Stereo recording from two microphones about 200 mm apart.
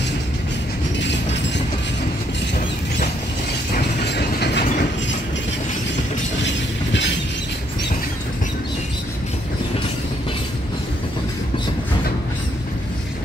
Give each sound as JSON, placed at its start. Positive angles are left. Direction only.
{"t": 0.9, "sound": "train", "side_deg": 60}
{"t": 3.7, "sound": "train", "side_deg": 55}
{"t": 6.4, "sound": "train", "side_deg": 65}